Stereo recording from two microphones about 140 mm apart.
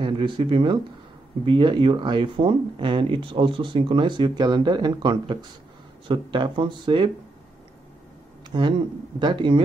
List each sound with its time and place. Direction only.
0.0 s speech: 40° right (ahead or behind)
8.5 s speech: 35° right (ahead or behind)